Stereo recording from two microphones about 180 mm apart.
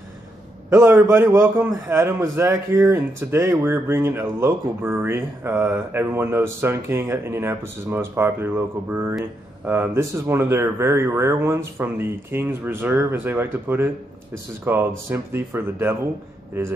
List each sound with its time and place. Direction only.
0.7 s a man's voice: 10° right (ahead or behind)